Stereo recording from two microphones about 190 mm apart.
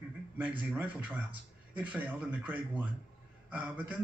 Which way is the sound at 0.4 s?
10° right (ahead or behind).